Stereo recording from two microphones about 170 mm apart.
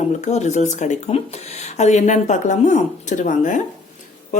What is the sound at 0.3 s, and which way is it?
Speech, 40° left (ahead or behind).